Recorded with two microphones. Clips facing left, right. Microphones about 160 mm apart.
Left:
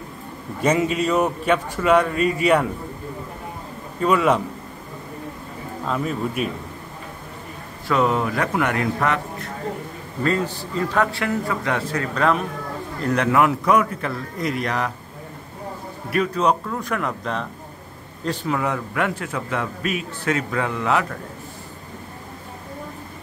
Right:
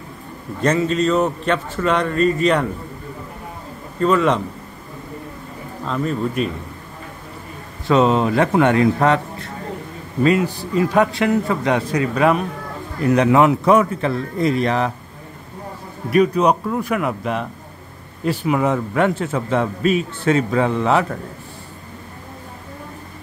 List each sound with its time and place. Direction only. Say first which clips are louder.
0.6 s a man's voice: right 2 dB; 10° left (ahead or behind)
4.0 s a man's voice: right 2 dB; 10° left (ahead or behind)
5.9 s speech: right 3 dB; 5° left (ahead or behind)
7.9 s a man's voice: right 5 dB; 25° right (ahead or behind)
10.2 s a man's voice: right 5 dB; 15° right (ahead or behind)
13.3 s a man's voice: right 3 dB; 25° right (ahead or behind)
16.1 s a man's voice: right 5 dB; 15° right (ahead or behind)
18.6 s a man's voice: right 6 dB; 25° right (ahead or behind)